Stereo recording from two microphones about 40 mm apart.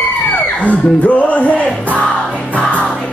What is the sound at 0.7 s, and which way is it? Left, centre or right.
Music, left.